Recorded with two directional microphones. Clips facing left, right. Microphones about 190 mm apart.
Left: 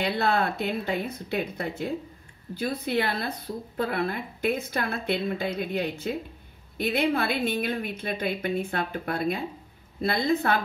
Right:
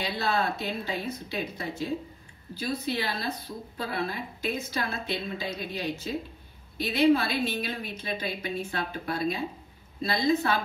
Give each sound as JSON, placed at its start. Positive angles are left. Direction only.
{"t": 0.0, "sound": "speech", "side_deg": 55}